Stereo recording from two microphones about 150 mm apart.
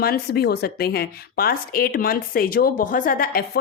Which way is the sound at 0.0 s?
90° left.